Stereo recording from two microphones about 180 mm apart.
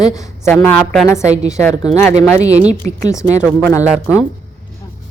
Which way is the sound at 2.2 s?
40° right (ahead or behind).